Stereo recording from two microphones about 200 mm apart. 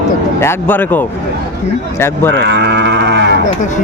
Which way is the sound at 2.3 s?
60° right (ahead or behind).